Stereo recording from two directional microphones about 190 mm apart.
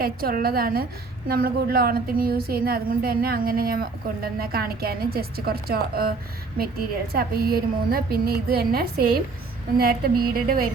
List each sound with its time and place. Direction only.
0.0 s a woman's voice: 50° right (ahead or behind)